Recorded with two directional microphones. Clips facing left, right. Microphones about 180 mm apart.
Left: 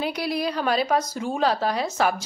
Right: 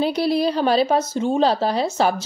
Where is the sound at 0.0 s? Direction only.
30° right (ahead or behind).